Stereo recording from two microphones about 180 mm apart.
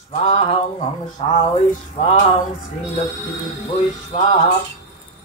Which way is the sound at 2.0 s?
40° left (ahead or behind).